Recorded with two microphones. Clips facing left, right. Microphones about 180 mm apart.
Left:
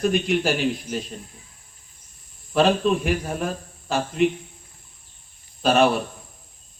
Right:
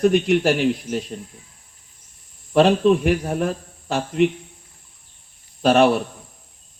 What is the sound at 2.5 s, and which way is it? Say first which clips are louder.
Speech: right 4 dB; 70° right (ahead or behind).